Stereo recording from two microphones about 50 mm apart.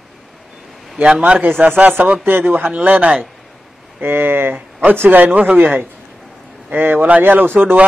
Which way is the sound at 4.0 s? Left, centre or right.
Right.